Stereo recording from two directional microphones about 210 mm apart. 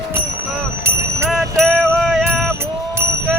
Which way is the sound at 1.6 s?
Centre (ahead or behind).